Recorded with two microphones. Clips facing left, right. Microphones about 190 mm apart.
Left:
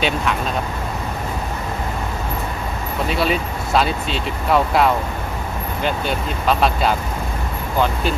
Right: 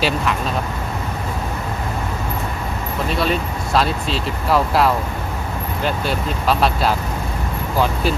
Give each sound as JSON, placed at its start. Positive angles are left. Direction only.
{"t": 0.0, "sound": "speech", "side_deg": 0}
{"t": 3.1, "sound": "speech", "side_deg": 0}